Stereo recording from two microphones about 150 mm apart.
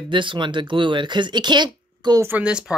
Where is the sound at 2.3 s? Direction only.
10° right (ahead or behind).